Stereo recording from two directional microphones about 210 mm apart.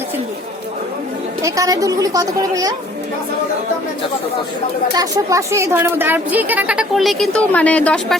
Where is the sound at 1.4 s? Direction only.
15° right (ahead or behind).